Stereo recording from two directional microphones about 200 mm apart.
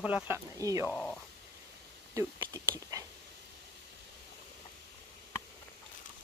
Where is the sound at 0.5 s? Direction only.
15° right (ahead or behind).